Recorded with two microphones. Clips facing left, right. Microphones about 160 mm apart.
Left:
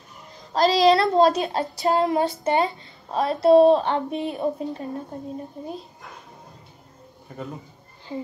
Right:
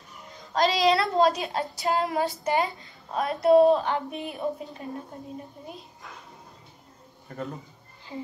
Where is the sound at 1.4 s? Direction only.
25° left (ahead or behind).